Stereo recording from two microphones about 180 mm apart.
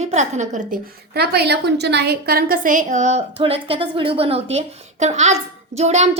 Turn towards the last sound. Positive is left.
turn(degrees=-40)  # may be behind; listen again after turning